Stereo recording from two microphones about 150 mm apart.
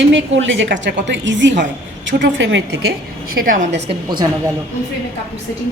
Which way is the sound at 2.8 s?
75° right (ahead or behind).